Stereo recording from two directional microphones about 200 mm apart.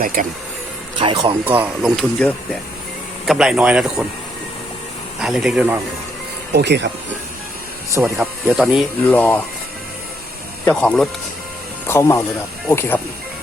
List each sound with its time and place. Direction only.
0.0 s speech: 45° right (ahead or behind)
0.9 s speech: 25° right (ahead or behind)
1.5 s speech: 5° right (ahead or behind)
5.2 s speech: centre (ahead or behind)
6.5 s speech: 55° right (ahead or behind)
7.9 s speech: 15° right (ahead or behind)
8.5 s speech: centre (ahead or behind)
10.7 s speech: 5° left (ahead or behind)